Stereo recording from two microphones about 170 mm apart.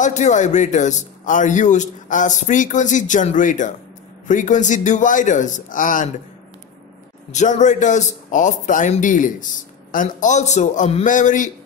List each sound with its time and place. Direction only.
0.0 s a man's voice: 45° left (ahead or behind)
7.3 s a man's voice: 45° left (ahead or behind)